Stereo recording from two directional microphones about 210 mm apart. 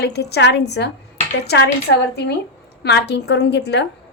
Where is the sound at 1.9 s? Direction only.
55° left (ahead or behind).